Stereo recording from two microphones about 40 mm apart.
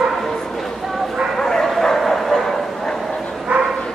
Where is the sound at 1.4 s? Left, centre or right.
Centre.